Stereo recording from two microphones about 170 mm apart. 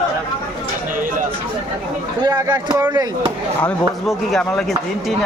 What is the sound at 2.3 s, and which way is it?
Speech, 20° right (ahead or behind).